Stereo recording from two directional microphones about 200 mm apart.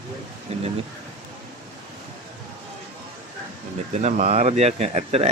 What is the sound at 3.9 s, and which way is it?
Speech, 35° right (ahead or behind).